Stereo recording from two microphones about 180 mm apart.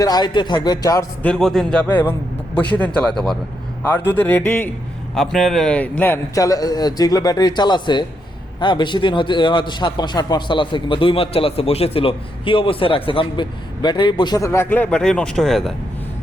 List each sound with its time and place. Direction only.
0.0 s a man's voice: 20° left (ahead or behind)
1.2 s a man's voice: 5° left (ahead or behind)